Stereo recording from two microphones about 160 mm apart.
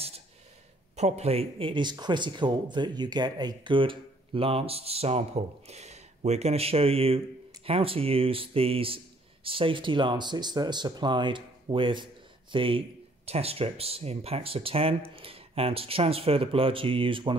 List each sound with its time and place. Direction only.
0.9 s speech: 45° right (ahead or behind)